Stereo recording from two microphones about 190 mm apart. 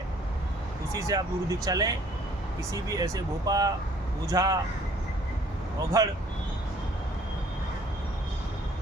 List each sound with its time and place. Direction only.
0.9 s speech: 20° right (ahead or behind)
5.9 s speech: 20° right (ahead or behind)